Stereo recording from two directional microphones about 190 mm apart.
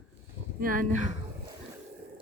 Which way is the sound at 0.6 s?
45° right (ahead or behind).